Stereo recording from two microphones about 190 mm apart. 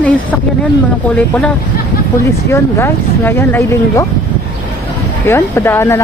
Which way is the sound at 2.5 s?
15° left (ahead or behind).